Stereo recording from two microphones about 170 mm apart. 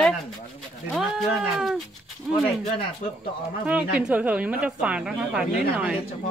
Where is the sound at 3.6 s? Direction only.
5° right (ahead or behind).